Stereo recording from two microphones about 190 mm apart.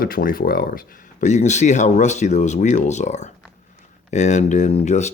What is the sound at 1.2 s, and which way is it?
Speech, 40° left (ahead or behind).